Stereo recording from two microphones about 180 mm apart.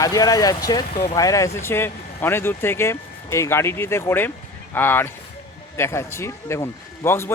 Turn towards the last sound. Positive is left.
turn(degrees=15)  # may be behind; listen again after turning